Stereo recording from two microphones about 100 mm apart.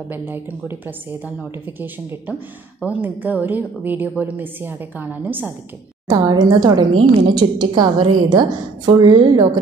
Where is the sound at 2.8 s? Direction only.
15° right (ahead or behind).